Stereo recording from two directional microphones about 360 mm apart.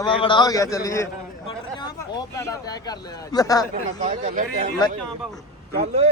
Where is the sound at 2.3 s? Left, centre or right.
Centre.